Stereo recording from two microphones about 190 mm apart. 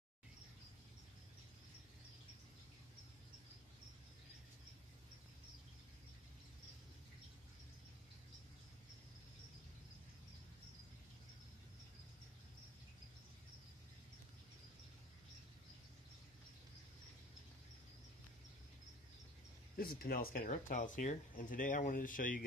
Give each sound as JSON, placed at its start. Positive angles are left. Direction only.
{"t": 19.8, "sound": "speech", "side_deg": 50}